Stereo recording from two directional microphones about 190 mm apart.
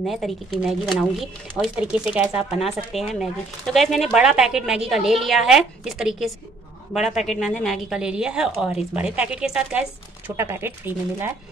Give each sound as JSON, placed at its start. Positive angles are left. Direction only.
{"t": 0.0, "sound": "speech", "side_deg": 0}